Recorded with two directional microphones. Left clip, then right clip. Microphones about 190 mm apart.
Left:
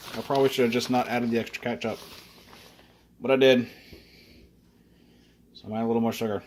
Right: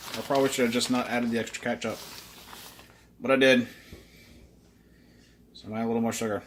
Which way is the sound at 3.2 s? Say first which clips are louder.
Left 1 dB; 35° left (ahead or behind).